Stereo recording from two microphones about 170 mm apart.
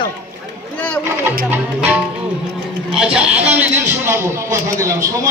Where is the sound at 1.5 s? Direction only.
10° right (ahead or behind).